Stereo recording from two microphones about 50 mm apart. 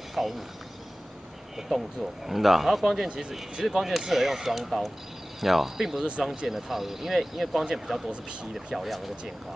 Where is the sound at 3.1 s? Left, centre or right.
Centre.